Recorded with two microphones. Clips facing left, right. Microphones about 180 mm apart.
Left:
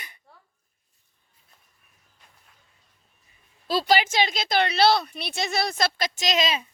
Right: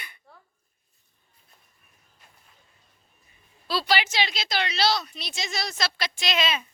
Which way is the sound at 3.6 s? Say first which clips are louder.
Left 4 dB; 45° left (ahead or behind).